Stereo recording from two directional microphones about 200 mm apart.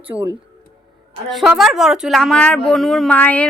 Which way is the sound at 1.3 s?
Centre (ahead or behind).